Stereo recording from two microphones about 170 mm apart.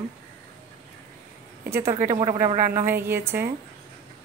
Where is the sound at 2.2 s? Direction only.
35° right (ahead or behind).